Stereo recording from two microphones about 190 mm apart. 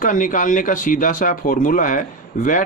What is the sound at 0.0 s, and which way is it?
Speech, 45° left (ahead or behind).